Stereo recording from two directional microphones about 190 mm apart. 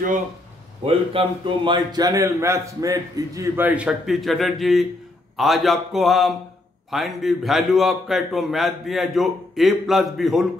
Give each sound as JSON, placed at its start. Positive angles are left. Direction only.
{"t": 0.8, "sound": "a man's voice", "side_deg": -25}